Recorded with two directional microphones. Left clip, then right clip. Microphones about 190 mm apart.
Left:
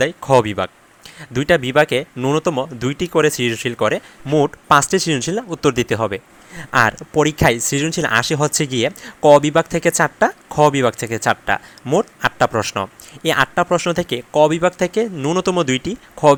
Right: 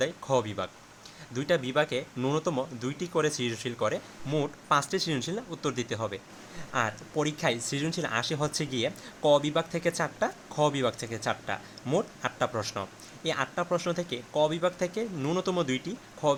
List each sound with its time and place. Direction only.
0.0 s speech: 35° left (ahead or behind)